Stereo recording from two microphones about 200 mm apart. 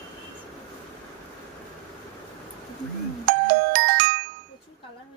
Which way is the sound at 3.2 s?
55° right (ahead or behind).